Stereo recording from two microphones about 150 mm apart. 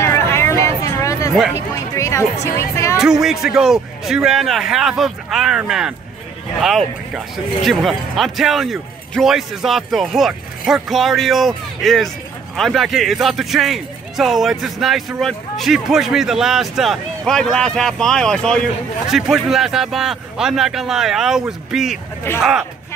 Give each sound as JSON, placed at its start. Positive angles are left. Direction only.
{"t": 0.0, "sound": "a sound", "side_deg": 20}
{"t": 2.4, "sound": "speech", "side_deg": 20}
{"t": 3.0, "sound": "a man's voice", "side_deg": -5}
{"t": 7.2, "sound": "a man's voice", "side_deg": 0}